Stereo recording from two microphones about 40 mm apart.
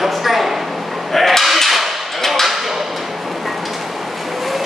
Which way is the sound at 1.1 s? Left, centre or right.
Centre.